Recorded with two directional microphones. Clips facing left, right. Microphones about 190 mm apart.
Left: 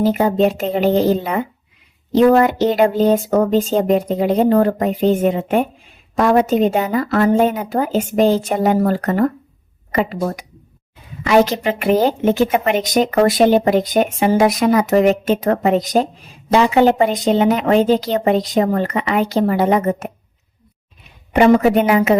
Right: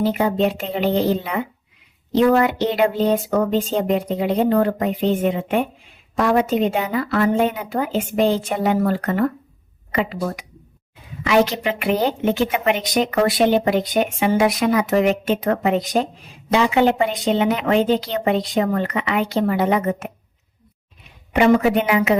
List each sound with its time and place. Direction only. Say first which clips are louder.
0.0 s a woman's voice: left 4 dB; 40° left (ahead or behind)
21.3 s speech: left 4 dB; 40° left (ahead or behind)